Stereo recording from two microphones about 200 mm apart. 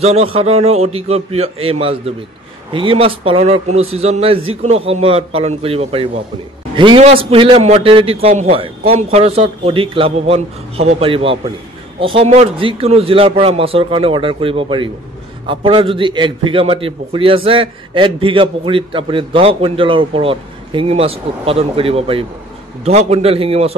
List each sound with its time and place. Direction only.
0.0 s a man's voice: 30° right (ahead or behind)